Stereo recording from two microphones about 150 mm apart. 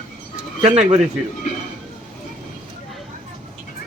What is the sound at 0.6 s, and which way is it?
Speech, 50° right (ahead or behind).